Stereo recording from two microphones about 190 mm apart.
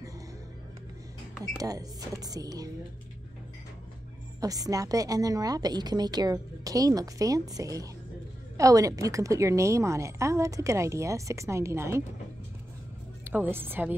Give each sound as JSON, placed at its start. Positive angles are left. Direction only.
{"t": 1.6, "sound": "a woman's voice", "side_deg": -20}
{"t": 4.4, "sound": "a woman's voice", "side_deg": -20}
{"t": 13.2, "sound": "speech", "side_deg": -10}